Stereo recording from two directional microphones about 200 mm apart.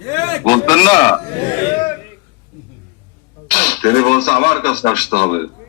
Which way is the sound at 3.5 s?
35° left (ahead or behind).